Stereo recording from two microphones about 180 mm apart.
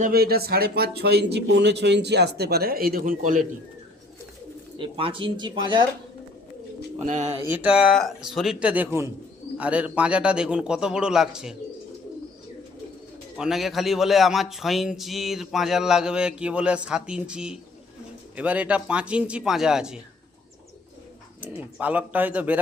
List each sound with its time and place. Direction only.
0.0 s a man's voice: 60° right (ahead or behind)
4.8 s speech: 30° right (ahead or behind)
7.0 s speech: 40° right (ahead or behind)
7.4 s speech: 5° right (ahead or behind)
13.3 s speech: 5° right (ahead or behind)
21.4 s speech: 10° right (ahead or behind)